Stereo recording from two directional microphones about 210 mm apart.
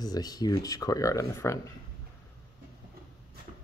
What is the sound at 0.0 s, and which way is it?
Speech, 20° left (ahead or behind).